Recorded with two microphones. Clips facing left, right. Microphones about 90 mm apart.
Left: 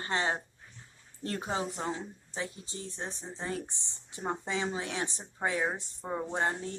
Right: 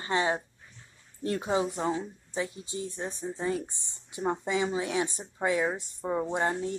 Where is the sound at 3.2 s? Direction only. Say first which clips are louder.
Right 8 dB; 20° left (ahead or behind).